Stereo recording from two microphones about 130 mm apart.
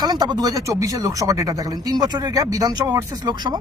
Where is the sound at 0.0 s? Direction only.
30° right (ahead or behind).